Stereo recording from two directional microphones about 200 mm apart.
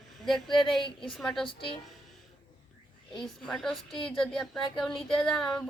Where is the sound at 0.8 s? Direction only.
25° left (ahead or behind).